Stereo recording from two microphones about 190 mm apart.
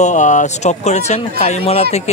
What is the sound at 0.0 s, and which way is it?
Speech, 40° left (ahead or behind).